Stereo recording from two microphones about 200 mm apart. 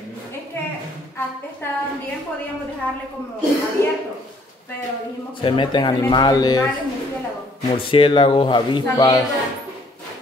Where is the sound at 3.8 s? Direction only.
15° left (ahead or behind).